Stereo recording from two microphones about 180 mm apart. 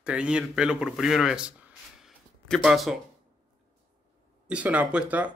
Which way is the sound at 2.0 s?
Centre (ahead or behind).